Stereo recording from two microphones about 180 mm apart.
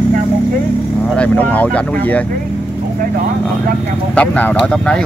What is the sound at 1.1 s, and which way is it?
Speech, 10° left (ahead or behind).